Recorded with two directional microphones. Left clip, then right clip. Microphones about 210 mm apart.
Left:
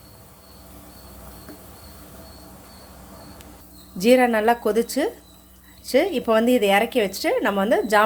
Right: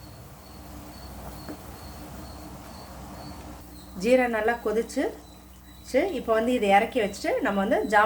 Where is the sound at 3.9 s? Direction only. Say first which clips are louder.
Left 5 dB; 40° left (ahead or behind).